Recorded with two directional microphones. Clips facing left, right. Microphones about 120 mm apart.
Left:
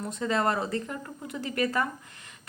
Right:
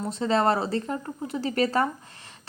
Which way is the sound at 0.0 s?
30° right (ahead or behind).